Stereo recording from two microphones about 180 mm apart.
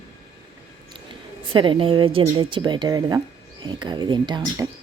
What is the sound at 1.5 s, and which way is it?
Speech, 30° right (ahead or behind).